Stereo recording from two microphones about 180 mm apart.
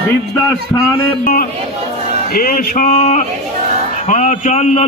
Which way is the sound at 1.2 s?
50° left (ahead or behind).